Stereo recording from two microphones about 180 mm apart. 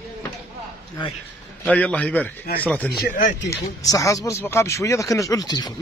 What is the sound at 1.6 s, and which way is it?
Speech, 10° left (ahead or behind).